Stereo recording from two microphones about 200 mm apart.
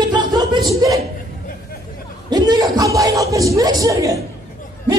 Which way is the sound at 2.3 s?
20° right (ahead or behind).